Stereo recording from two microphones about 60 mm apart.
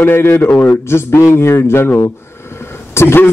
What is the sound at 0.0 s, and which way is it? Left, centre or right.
A man's voice, left.